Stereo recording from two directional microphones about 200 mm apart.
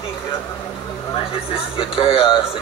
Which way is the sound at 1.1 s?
25° left (ahead or behind).